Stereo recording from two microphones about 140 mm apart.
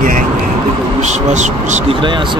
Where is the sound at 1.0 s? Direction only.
55° right (ahead or behind).